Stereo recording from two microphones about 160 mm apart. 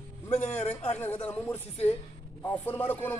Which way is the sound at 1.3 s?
10° left (ahead or behind).